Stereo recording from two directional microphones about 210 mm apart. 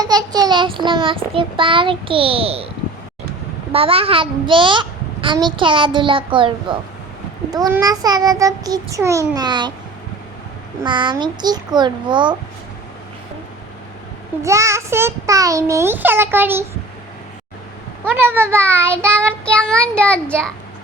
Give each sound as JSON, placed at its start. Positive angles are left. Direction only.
{"t": 0.0, "sound": "a child's voice", "side_deg": -20}
{"t": 3.7, "sound": "a child's voice", "side_deg": -25}
{"t": 10.8, "sound": "a child's voice", "side_deg": -20}
{"t": 14.4, "sound": "a child's voice", "side_deg": -15}
{"t": 18.0, "sound": "a child's voice", "side_deg": -10}
{"t": 19.3, "sound": "child singing", "side_deg": 5}